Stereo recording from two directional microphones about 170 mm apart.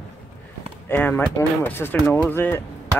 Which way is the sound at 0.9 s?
10° left (ahead or behind).